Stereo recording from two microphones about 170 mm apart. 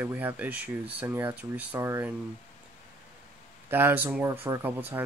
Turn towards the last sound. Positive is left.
turn(degrees=-10)  # may be behind; listen again after turning